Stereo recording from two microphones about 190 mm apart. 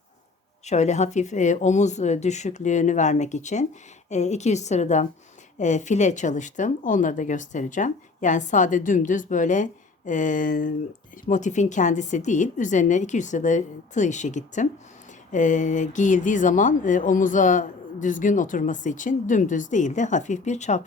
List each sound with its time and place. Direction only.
0.6 s speech: 35° left (ahead or behind)